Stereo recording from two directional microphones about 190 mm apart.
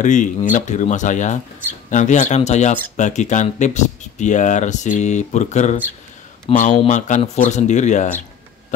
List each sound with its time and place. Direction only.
0.0 s speech: 40° left (ahead or behind)